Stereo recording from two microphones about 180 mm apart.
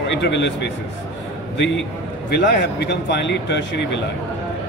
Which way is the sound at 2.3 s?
70° left (ahead or behind).